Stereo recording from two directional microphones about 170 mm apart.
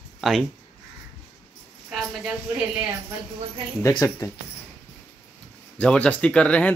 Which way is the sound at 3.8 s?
20° left (ahead or behind).